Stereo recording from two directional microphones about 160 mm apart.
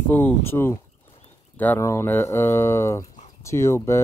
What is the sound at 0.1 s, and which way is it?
Speech, 15° left (ahead or behind).